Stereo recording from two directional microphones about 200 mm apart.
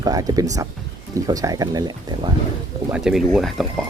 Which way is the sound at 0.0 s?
20° right (ahead or behind).